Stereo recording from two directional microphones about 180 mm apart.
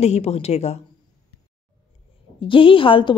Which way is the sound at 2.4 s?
30° left (ahead or behind).